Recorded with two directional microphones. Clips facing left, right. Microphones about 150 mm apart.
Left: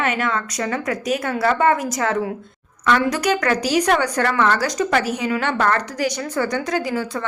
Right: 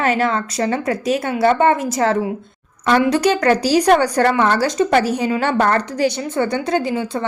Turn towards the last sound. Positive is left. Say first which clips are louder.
# right 3 dB
turn(degrees=-25)  # may be behind; listen again after turning